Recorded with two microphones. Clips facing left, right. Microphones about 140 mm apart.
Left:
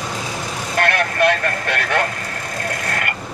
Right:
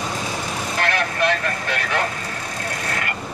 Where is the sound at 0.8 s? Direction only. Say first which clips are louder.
Left 5 dB; 60° left (ahead or behind).